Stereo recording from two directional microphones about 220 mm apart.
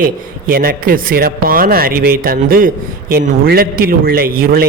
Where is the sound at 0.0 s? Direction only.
40° right (ahead or behind).